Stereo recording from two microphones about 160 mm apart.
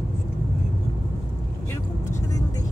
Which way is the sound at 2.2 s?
20° left (ahead or behind).